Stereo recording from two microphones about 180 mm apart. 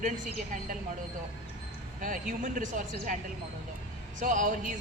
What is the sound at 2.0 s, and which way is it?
A woman's voice, 45° right (ahead or behind).